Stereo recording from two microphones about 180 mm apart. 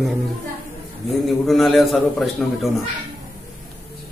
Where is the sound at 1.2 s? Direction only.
Centre (ahead or behind).